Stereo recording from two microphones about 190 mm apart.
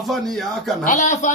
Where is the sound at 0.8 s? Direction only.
40° left (ahead or behind).